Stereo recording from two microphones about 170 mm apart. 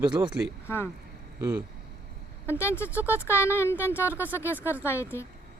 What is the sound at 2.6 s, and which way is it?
Speech, 15° left (ahead or behind).